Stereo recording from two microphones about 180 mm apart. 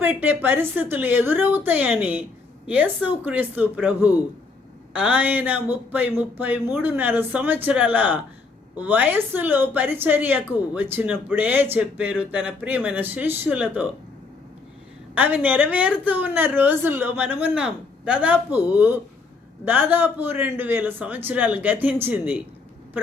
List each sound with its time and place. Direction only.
0.0 s a woman's voice: 10° right (ahead or behind)
15.1 s a woman's voice: 10° right (ahead or behind)